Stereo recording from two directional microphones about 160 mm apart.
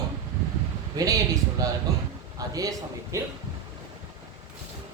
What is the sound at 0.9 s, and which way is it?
A man's voice, 25° right (ahead or behind).